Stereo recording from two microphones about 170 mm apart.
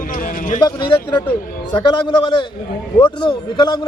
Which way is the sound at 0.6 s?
25° left (ahead or behind).